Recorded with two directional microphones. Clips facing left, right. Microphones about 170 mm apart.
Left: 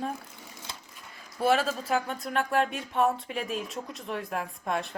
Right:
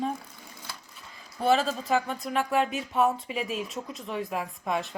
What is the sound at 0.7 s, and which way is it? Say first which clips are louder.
Wood: even; 20° left (ahead or behind).